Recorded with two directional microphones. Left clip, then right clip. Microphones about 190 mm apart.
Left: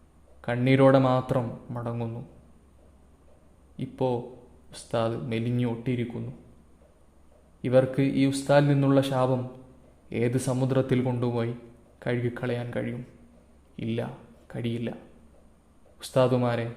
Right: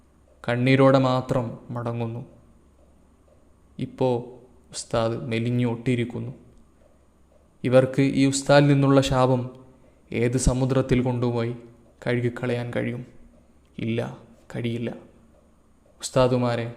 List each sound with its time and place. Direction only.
0.4 s speech: 15° right (ahead or behind)
3.8 s speech: 15° right (ahead or behind)
7.6 s speech: 15° right (ahead or behind)
16.0 s speech: 10° right (ahead or behind)